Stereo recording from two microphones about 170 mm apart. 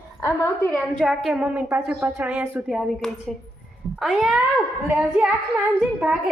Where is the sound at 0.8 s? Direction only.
Centre (ahead or behind).